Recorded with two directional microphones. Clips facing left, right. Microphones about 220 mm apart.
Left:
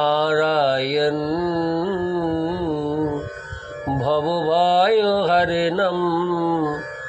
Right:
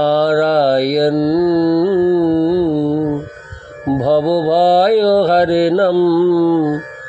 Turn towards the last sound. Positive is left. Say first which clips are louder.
# right 9 dB
turn(degrees=-35)  # may be behind; listen again after turning